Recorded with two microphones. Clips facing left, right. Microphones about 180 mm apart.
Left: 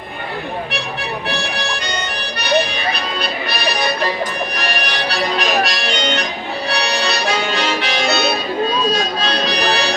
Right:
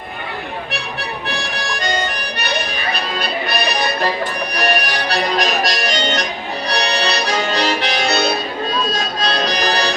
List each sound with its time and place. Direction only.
5.4 s music: 40° right (ahead or behind)
6.7 s accordion: 40° right (ahead or behind)
8.9 s harmonica: 40° right (ahead or behind)